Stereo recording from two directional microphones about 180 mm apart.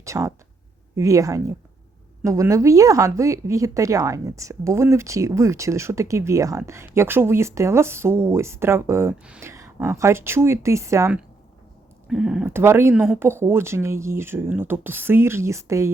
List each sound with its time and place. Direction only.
0.0 s speech: 15° right (ahead or behind)
12.0 s speech: 5° right (ahead or behind)